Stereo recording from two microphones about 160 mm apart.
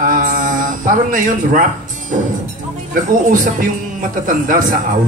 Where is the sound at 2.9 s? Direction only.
60° right (ahead or behind).